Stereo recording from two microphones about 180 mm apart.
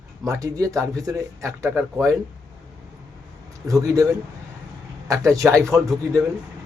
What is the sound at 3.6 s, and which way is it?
Speech, 15° right (ahead or behind).